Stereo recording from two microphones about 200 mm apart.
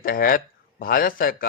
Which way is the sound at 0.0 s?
45° left (ahead or behind).